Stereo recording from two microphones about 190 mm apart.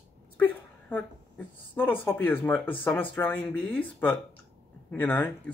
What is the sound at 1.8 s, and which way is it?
Speech, 10° left (ahead or behind).